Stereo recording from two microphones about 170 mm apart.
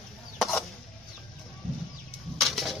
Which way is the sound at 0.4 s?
Centre (ahead or behind).